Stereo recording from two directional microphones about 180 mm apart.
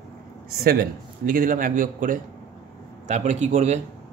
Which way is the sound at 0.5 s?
55° right (ahead or behind).